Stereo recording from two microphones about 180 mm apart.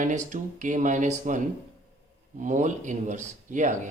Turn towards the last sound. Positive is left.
turn(degrees=-45)  # may be behind; listen again after turning